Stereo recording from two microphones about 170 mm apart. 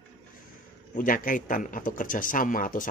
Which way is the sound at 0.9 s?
55° left (ahead or behind).